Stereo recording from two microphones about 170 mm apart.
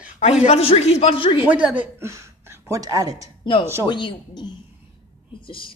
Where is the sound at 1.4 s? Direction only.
10° right (ahead or behind).